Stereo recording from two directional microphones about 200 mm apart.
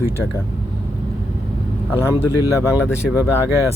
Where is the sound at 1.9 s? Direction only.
10° left (ahead or behind).